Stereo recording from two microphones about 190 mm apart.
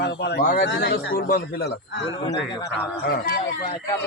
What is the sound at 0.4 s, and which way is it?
Speech, 50° left (ahead or behind).